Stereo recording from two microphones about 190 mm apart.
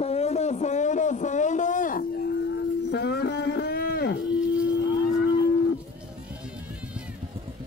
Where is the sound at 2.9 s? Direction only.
60° left (ahead or behind).